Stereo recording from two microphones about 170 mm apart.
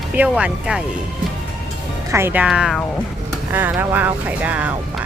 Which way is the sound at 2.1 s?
15° right (ahead or behind).